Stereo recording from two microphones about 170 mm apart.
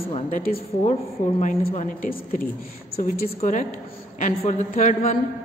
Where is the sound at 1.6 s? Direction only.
35° left (ahead or behind).